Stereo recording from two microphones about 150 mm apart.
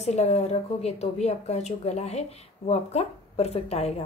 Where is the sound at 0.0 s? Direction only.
45° left (ahead or behind).